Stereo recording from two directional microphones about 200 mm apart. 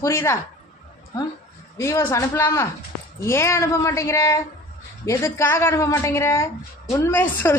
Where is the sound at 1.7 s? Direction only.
15° left (ahead or behind).